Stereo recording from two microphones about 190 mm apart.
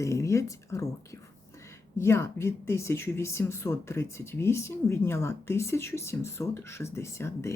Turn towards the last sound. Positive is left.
turn(degrees=15)  # may be behind; listen again after turning